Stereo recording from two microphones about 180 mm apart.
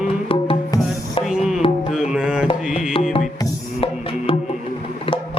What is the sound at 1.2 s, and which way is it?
Music, centre (ahead or behind).